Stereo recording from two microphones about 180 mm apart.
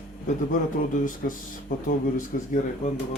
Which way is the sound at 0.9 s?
50° left (ahead or behind).